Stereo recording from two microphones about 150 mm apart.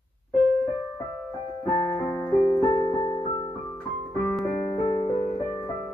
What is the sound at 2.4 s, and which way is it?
Keyboard, 30° left (ahead or behind).